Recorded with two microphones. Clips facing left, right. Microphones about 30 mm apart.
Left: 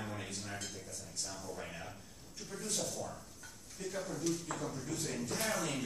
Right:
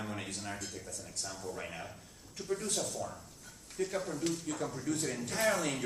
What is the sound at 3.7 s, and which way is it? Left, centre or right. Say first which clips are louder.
Speech: right 5 dB; right.